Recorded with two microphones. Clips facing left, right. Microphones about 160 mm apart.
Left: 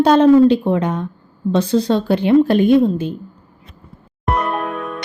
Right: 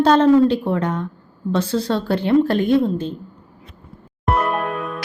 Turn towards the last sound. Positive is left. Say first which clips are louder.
# even
turn(degrees=0)  # may be behind; listen again after turning